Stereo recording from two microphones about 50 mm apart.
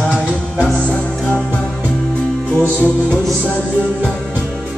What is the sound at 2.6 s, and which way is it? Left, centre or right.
Music, left.